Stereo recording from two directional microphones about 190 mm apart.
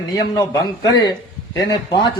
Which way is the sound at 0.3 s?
20° left (ahead or behind).